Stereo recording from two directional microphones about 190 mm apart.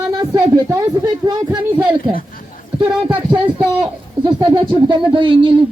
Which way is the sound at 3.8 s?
25° right (ahead or behind).